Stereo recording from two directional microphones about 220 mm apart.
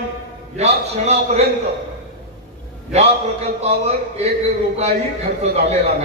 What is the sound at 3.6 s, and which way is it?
Speech, 30° right (ahead or behind).